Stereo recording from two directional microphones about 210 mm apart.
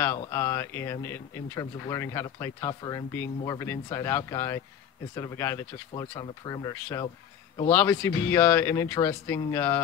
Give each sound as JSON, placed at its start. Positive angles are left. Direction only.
{"t": 0.0, "sound": "speech", "side_deg": 10}